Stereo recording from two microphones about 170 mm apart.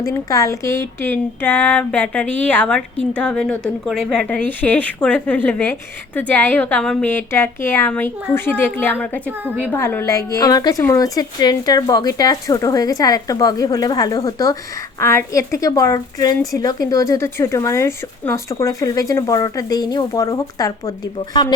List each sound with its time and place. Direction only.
0.0 s a woman's voice: 20° left (ahead or behind)